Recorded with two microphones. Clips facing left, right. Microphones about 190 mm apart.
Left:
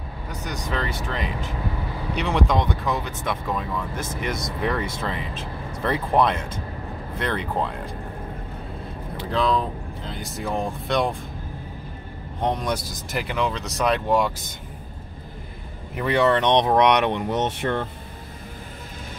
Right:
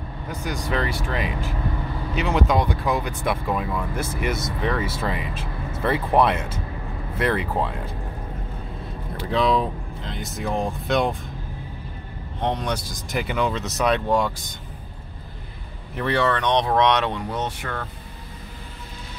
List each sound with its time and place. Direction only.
0.3 s speech: 10° right (ahead or behind)
9.3 s speech: centre (ahead or behind)
12.4 s speech: 10° left (ahead or behind)
13.1 s speech: centre (ahead or behind)
16.0 s speech: 15° left (ahead or behind)